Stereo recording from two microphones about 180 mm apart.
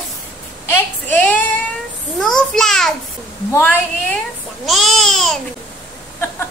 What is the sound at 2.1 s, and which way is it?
A child's voice, centre (ahead or behind).